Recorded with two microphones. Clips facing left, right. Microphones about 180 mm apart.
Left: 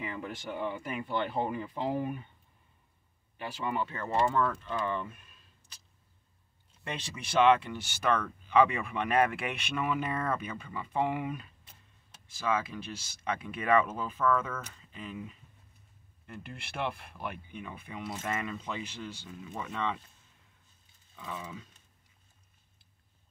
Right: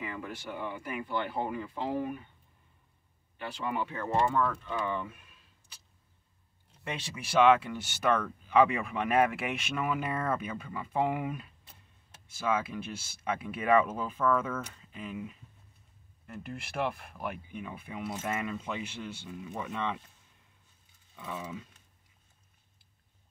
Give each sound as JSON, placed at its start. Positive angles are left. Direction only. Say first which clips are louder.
{"t": 0.0, "sound": "speech", "louder": "left 1 dB", "side_deg": 25}
{"t": 3.3, "sound": "speech", "louder": "even", "side_deg": 10}
{"t": 3.6, "sound": "speech", "louder": "even", "side_deg": -10}
{"t": 6.8, "sound": "speech", "louder": "right 1 dB", "side_deg": -5}
{"t": 16.8, "sound": "speech", "louder": "right 1 dB", "side_deg": -5}
{"t": 21.2, "sound": "speech", "louder": "right 2 dB", "side_deg": -5}